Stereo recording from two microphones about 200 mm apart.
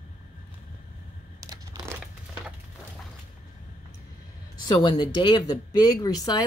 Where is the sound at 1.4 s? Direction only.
15° right (ahead or behind).